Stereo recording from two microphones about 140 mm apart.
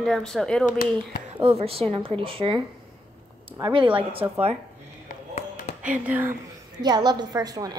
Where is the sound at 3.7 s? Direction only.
40° right (ahead or behind).